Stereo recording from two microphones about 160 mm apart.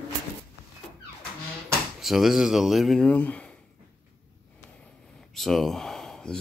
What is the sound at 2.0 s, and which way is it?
Speech, centre (ahead or behind).